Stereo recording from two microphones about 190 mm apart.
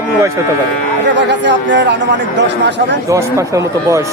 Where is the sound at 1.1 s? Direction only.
65° right (ahead or behind).